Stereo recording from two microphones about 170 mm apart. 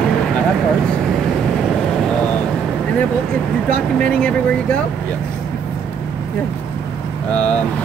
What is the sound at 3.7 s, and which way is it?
Speech, 5° left (ahead or behind).